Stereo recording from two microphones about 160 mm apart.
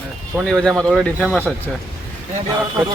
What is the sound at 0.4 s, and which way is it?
Speech, 5° left (ahead or behind).